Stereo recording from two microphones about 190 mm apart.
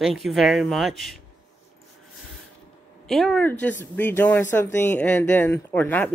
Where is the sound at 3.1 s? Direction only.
Centre (ahead or behind).